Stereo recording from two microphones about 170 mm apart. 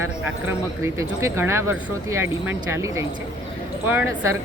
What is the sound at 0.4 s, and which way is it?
A woman's voice, 15° right (ahead or behind).